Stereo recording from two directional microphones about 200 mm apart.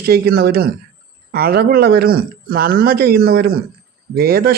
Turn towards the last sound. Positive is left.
turn(degrees=-50)  # may be behind; listen again after turning